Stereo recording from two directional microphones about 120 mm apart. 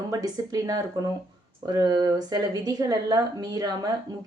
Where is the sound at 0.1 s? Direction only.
30° right (ahead or behind).